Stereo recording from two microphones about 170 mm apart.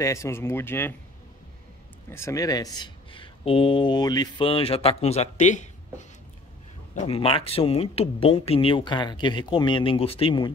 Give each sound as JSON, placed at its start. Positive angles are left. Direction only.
{"t": 0.0, "sound": "speech", "side_deg": 15}
{"t": 2.0, "sound": "speech", "side_deg": 15}
{"t": 7.1, "sound": "speech", "side_deg": 30}